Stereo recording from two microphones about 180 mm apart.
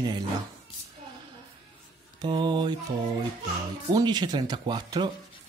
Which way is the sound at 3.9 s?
25° right (ahead or behind).